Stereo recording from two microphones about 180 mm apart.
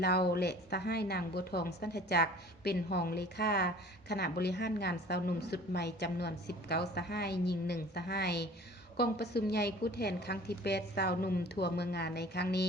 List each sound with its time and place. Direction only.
0.0 s a woman's voice: 60° left (ahead or behind)